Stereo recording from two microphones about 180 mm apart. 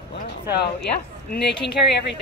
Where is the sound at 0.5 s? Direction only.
60° left (ahead or behind).